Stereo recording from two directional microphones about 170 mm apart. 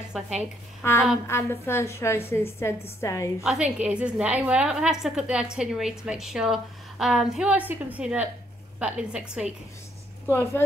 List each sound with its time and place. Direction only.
0.1 s a woman's voice: 5° right (ahead or behind)
0.8 s a woman's voice: 15° left (ahead or behind)
3.4 s a woman's voice: 5° right (ahead or behind)
10.2 s a woman's voice: 15° left (ahead or behind)